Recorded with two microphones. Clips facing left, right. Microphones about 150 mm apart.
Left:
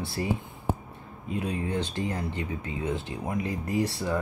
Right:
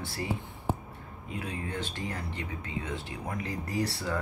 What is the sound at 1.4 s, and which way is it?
Speech, 20° left (ahead or behind).